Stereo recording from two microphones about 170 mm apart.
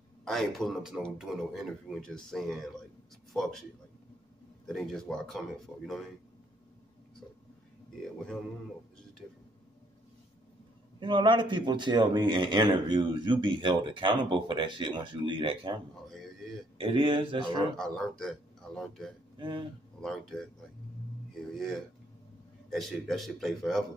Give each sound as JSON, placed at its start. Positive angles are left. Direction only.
{"t": 0.2, "sound": "a man's voice", "side_deg": 0}
{"t": 4.6, "sound": "a man's voice", "side_deg": 0}
{"t": 8.0, "sound": "a man's voice", "side_deg": 0}
{"t": 11.0, "sound": "speech", "side_deg": -30}
{"t": 17.7, "sound": "a man's voice", "side_deg": 5}
{"t": 19.3, "sound": "speech", "side_deg": -30}
{"t": 20.0, "sound": "a man's voice", "side_deg": 0}